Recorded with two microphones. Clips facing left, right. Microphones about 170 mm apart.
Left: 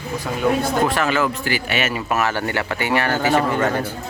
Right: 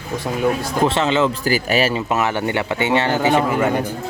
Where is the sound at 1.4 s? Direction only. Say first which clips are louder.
Right 5 dB; 40° right (ahead or behind).